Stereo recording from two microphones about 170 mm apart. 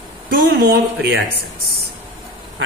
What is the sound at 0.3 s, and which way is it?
Speech, 65° right (ahead or behind).